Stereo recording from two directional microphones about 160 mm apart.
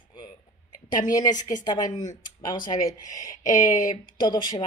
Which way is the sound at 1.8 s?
50° left (ahead or behind).